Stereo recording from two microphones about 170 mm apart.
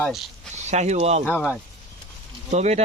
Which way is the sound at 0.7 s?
40° right (ahead or behind).